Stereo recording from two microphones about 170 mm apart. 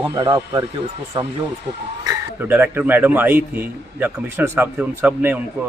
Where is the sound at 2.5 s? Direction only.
10° right (ahead or behind).